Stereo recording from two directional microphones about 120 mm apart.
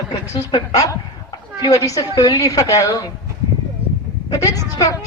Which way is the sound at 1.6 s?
30° left (ahead or behind).